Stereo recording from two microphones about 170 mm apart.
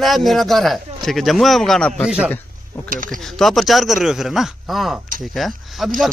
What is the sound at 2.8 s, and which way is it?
Speech, 50° right (ahead or behind).